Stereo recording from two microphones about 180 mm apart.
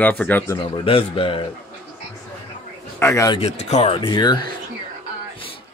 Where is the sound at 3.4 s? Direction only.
35° left (ahead or behind).